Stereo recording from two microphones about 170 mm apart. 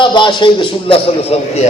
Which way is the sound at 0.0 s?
25° left (ahead or behind).